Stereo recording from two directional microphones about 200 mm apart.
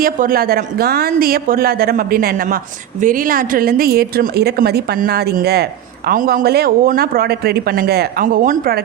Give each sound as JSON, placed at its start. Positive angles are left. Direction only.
{"t": 0.0, "sound": "speech", "side_deg": -45}